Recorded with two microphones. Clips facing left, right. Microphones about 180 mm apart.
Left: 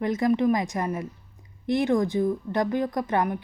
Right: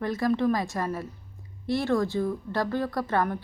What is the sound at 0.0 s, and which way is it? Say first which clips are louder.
A woman's voice: left 3 dB; 20° left (ahead or behind).